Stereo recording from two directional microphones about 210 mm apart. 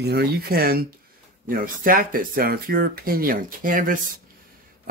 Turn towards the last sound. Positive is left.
turn(degrees=-40)  # may be behind; listen again after turning